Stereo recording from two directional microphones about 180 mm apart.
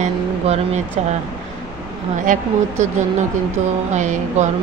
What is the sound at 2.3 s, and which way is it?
Speech, 45° right (ahead or behind).